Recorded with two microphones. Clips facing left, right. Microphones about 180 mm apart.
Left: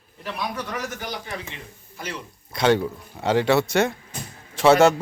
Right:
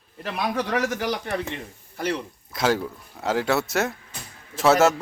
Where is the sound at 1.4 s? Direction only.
55° right (ahead or behind).